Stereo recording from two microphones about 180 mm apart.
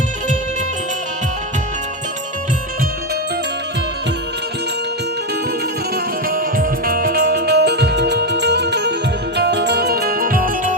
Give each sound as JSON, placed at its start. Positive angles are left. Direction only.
{"t": 6.2, "sound": "music", "side_deg": -50}